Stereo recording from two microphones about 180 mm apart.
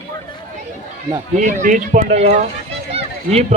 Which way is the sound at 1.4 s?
45° right (ahead or behind).